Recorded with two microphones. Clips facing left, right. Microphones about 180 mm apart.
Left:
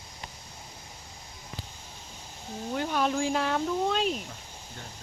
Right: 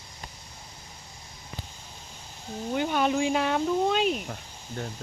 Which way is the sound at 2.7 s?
Centre (ahead or behind).